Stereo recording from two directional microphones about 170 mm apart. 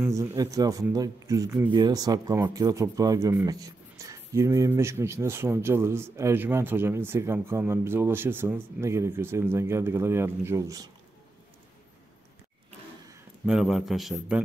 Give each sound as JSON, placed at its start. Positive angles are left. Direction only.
{"t": 0.0, "sound": "speech", "side_deg": -15}
{"t": 13.5, "sound": "a man's voice", "side_deg": 0}